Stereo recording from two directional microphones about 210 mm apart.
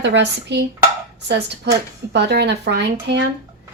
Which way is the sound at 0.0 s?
55° right (ahead or behind).